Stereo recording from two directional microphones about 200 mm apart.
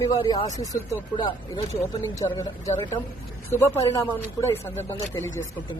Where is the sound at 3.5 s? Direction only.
10° left (ahead or behind).